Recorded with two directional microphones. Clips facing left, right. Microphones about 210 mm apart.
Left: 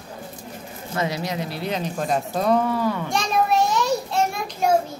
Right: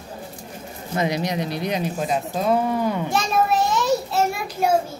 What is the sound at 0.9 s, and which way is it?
Speech, 15° right (ahead or behind).